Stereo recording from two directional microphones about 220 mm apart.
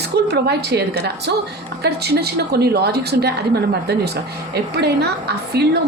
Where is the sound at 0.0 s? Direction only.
50° right (ahead or behind).